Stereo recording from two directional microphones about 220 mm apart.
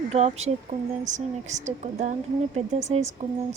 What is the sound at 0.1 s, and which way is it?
Speech, 30° right (ahead or behind).